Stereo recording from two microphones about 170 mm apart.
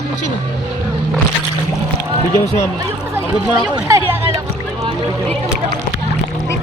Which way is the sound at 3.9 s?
15° right (ahead or behind).